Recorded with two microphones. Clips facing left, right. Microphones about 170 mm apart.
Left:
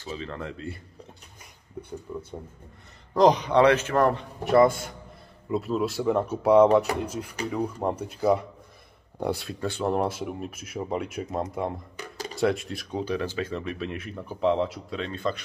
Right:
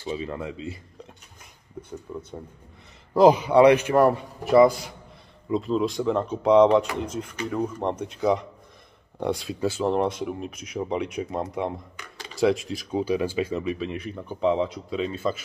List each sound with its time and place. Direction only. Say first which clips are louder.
0.0 s a man's voice: right 4 dB; 10° right (ahead or behind)
3.2 s a man's voice: right 3 dB; 10° right (ahead or behind)
12.0 s a sound: left 6 dB; 40° left (ahead or behind)
12.4 s speech: right 3 dB; centre (ahead or behind)